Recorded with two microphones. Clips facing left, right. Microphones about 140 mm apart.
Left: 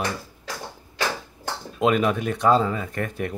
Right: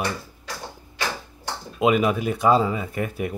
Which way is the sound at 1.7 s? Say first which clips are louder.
Right 1 dB; 5° right (ahead or behind).